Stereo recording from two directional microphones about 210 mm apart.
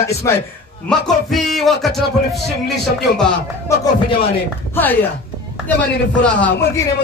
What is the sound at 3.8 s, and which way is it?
Speech, 25° left (ahead or behind).